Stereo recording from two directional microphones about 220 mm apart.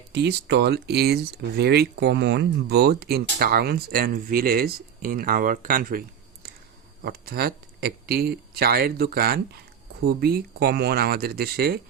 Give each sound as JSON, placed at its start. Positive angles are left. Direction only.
{"t": 0.1, "sound": "speech", "side_deg": -50}
{"t": 7.0, "sound": "speech", "side_deg": -45}